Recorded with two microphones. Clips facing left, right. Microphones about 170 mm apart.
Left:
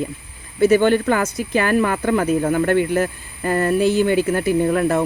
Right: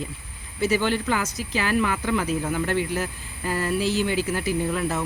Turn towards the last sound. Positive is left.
turn(degrees=55)  # may be behind; listen again after turning